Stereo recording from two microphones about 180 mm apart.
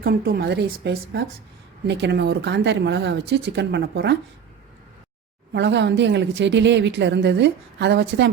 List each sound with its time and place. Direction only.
0.3 s a woman's voice: 60° right (ahead or behind)
5.5 s a woman's voice: 75° right (ahead or behind)